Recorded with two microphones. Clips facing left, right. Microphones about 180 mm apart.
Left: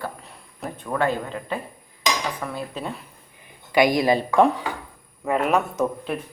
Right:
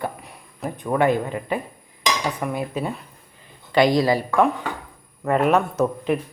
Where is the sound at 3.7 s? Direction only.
15° left (ahead or behind).